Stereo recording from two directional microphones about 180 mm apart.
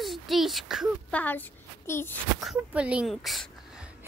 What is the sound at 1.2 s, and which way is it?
Speech, 10° left (ahead or behind).